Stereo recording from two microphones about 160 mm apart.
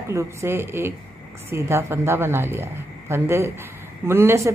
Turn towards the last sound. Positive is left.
turn(degrees=-15)  # may be behind; listen again after turning